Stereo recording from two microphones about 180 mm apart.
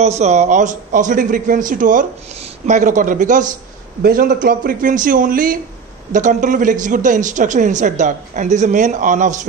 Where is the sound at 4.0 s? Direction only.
55° right (ahead or behind).